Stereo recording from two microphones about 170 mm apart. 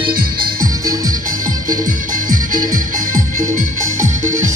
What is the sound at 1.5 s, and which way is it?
Music, 50° right (ahead or behind).